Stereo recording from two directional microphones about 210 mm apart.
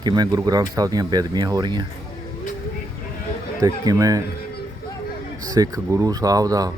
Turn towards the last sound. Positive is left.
turn(degrees=-15)  # may be behind; listen again after turning